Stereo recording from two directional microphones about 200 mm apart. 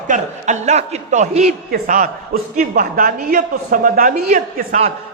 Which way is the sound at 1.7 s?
45° right (ahead or behind).